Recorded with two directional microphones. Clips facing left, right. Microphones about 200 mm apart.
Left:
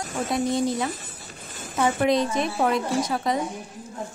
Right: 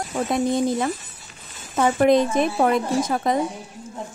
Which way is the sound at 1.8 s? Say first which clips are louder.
Right 4 dB; 55° right (ahead or behind).